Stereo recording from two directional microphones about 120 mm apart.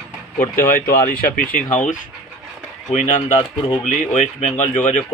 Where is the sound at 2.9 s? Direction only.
75° left (ahead or behind).